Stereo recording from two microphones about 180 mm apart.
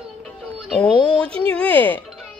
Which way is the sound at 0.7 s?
5° left (ahead or behind).